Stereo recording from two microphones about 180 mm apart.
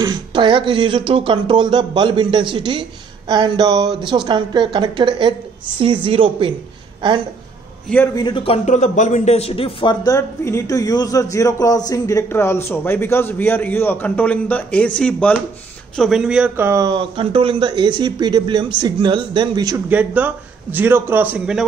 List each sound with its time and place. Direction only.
0.0 s speech: 25° right (ahead or behind)
8.1 s a man's voice: 25° left (ahead or behind); by 19.8 s 20° right (ahead or behind)
19.9 s a man's voice: 10° right (ahead or behind)